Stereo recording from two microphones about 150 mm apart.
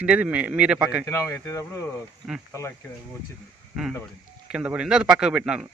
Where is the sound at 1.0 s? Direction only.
20° left (ahead or behind).